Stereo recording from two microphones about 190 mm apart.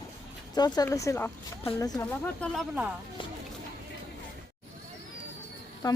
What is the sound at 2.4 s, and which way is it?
Speech, 5° left (ahead or behind).